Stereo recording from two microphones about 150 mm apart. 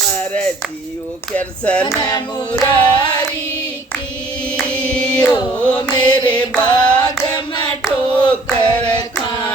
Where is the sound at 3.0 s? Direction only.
30° left (ahead or behind).